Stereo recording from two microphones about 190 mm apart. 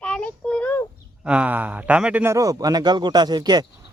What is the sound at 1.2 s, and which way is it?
A man's voice, 5° right (ahead or behind).